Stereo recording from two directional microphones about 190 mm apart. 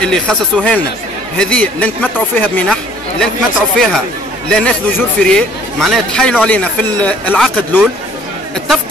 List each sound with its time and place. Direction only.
0.0 s a man's voice: 5° left (ahead or behind)